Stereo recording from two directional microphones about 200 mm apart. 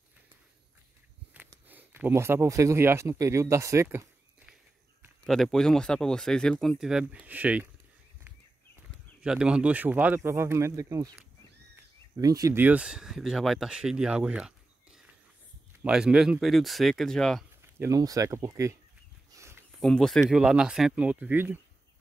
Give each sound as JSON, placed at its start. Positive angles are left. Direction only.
{"t": 1.3, "sound": "speech", "side_deg": -10}
{"t": 5.2, "sound": "speech", "side_deg": 0}
{"t": 9.2, "sound": "speech", "side_deg": -5}
{"t": 17.6, "sound": "speech", "side_deg": -15}
{"t": 19.3, "sound": "a sound", "side_deg": -15}
{"t": 19.8, "sound": "speech", "side_deg": 5}